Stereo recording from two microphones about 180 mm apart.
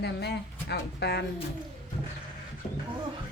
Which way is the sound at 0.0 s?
65° left (ahead or behind).